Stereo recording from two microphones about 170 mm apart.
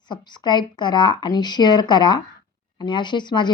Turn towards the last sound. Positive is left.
turn(degrees=25)  # may be behind; listen again after turning